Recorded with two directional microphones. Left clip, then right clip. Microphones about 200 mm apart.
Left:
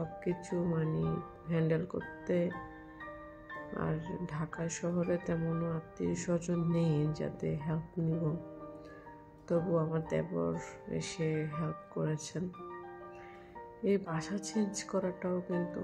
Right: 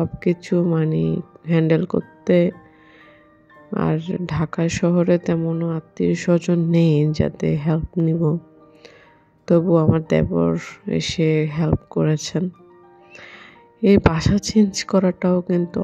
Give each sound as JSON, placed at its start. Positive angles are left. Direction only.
{"t": 0.0, "sound": "speech", "side_deg": -50}
{"t": 3.7, "sound": "speech", "side_deg": -50}
{"t": 9.5, "sound": "speech", "side_deg": -50}
{"t": 13.8, "sound": "speech", "side_deg": -50}